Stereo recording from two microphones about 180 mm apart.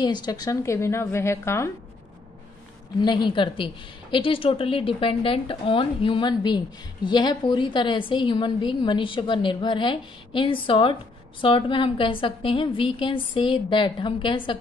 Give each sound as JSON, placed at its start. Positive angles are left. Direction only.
{"t": 0.0, "sound": "a woman's voice", "side_deg": 25}
{"t": 3.0, "sound": "a woman's voice", "side_deg": 25}